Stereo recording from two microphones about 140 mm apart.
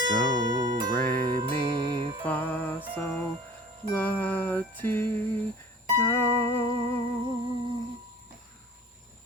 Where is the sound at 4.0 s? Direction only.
10° left (ahead or behind).